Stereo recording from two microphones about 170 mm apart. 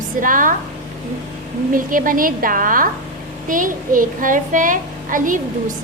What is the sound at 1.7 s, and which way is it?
A woman's voice, 55° right (ahead or behind).